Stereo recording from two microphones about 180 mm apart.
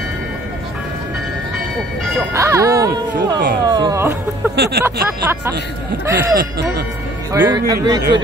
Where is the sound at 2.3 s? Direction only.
15° right (ahead or behind).